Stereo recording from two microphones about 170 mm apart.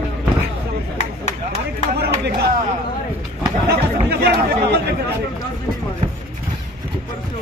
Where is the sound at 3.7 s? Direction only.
75° right (ahead or behind).